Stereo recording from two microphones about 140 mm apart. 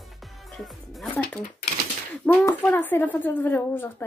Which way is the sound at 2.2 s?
10° left (ahead or behind).